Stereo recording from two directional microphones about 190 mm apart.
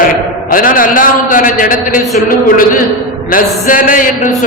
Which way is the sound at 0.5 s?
45° left (ahead or behind).